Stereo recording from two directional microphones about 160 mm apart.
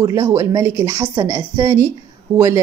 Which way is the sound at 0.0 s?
20° right (ahead or behind).